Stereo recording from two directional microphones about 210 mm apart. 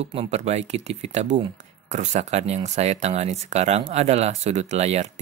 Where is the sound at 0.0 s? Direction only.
30° right (ahead or behind).